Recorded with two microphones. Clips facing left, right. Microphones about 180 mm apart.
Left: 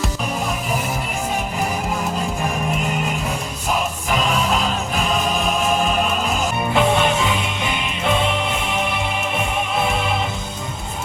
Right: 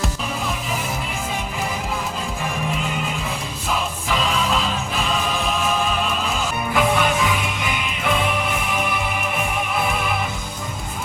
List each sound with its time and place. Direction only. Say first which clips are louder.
6.7 s music: left 1 dB; 25° left (ahead or behind)